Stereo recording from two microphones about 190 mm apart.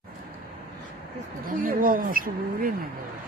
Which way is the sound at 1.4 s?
50° right (ahead or behind).